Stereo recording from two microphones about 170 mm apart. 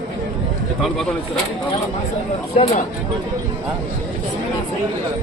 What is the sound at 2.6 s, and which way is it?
Speech, 35° left (ahead or behind).